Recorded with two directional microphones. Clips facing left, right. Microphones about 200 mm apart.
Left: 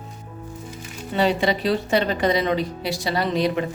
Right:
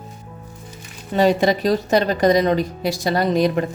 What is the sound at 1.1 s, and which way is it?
A woman's voice, 45° right (ahead or behind).